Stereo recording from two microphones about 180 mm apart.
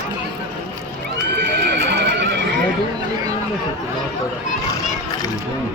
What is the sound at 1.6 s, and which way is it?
Horse, 70° right (ahead or behind).